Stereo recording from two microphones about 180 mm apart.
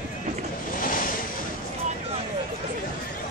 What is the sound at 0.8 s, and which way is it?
Waves, 50° left (ahead or behind).